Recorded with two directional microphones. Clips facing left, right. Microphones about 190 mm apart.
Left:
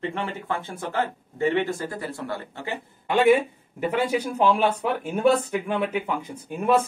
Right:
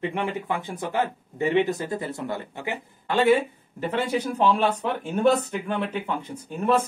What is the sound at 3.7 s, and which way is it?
Speech, 10° left (ahead or behind).